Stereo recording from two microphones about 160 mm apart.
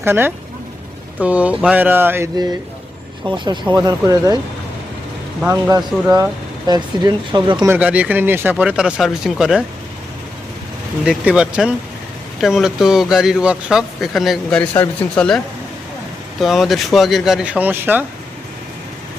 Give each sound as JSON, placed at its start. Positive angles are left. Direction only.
{"t": 0.0, "sound": "speech", "side_deg": -15}
{"t": 3.2, "sound": "speech", "side_deg": -30}
{"t": 5.5, "sound": "speech", "side_deg": -20}
{"t": 7.7, "sound": "speech", "side_deg": -10}
{"t": 11.0, "sound": "a man's voice", "side_deg": -5}
{"t": 16.4, "sound": "a man's voice", "side_deg": 0}